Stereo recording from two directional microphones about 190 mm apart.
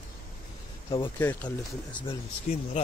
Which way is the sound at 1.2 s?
10° left (ahead or behind).